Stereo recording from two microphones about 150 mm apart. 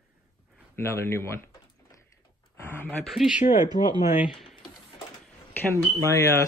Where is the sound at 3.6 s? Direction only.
20° right (ahead or behind).